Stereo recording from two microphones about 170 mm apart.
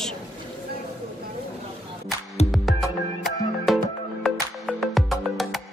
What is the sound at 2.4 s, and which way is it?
Music, 35° left (ahead or behind).